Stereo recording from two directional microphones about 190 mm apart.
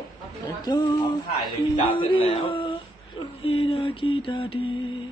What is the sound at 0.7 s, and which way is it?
Speech, 20° left (ahead or behind).